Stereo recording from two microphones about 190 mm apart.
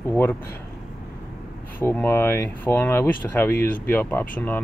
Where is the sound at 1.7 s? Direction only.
10° left (ahead or behind).